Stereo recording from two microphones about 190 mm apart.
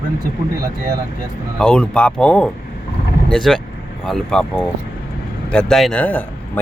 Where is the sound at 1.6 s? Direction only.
5° left (ahead or behind).